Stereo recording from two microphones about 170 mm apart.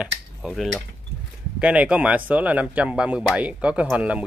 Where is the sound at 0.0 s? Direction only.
5° right (ahead or behind).